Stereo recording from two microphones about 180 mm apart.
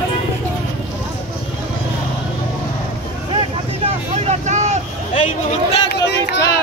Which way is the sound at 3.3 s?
35° right (ahead or behind).